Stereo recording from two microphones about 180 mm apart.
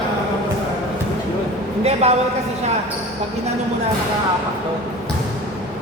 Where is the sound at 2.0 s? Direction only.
35° right (ahead or behind).